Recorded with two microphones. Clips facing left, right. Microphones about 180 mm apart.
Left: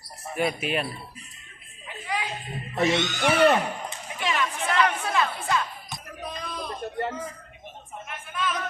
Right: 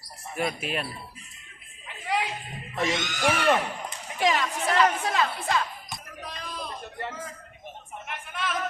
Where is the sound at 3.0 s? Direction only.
45° left (ahead or behind).